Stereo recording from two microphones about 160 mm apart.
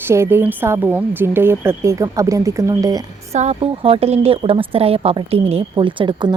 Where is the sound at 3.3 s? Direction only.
40° right (ahead or behind).